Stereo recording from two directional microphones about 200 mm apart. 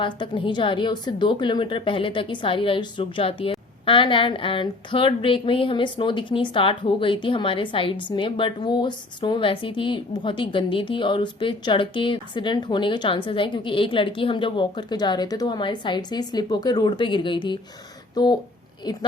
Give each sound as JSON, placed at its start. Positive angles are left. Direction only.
{"t": 0.0, "sound": "a woman's voice", "side_deg": 25}